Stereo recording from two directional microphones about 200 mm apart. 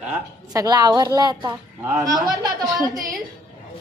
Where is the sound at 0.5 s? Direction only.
20° right (ahead or behind).